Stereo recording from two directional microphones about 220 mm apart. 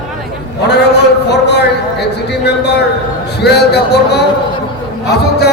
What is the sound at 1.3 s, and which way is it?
A man's voice, 50° left (ahead or behind).